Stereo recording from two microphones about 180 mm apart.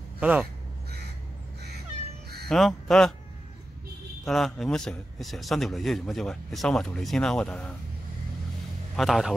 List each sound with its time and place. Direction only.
0.2 s speech: 10° right (ahead or behind)
2.5 s a man's voice: 5° left (ahead or behind)
4.2 s a man's voice: centre (ahead or behind)
8.9 s a man's voice: centre (ahead or behind)